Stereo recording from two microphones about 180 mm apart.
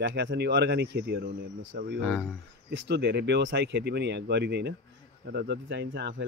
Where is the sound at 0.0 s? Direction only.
80° right.